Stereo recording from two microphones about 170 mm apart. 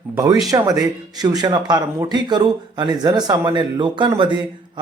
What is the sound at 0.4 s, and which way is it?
Speech, 20° right (ahead or behind).